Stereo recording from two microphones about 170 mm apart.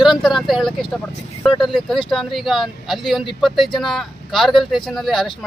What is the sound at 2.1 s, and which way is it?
Speech, centre (ahead or behind).